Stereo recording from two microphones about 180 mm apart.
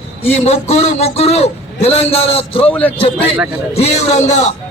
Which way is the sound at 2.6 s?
10° left (ahead or behind).